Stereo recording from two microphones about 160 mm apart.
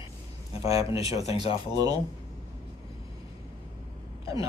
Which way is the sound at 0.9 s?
35° left (ahead or behind).